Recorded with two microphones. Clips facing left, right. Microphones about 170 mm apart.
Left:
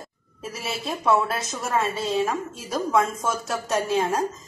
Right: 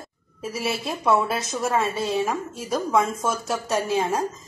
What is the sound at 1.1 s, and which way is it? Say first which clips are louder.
Speech: right 1 dB; 10° right (ahead or behind).